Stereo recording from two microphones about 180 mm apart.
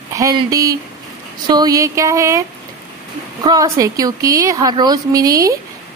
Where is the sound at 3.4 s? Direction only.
20° right (ahead or behind).